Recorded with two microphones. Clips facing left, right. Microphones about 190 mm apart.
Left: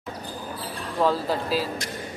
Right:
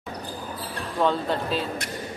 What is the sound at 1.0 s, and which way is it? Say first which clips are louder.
Speech: even; 5° left (ahead or behind).